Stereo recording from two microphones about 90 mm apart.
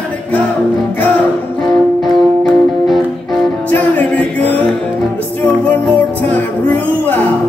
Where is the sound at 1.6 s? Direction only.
Centre (ahead or behind).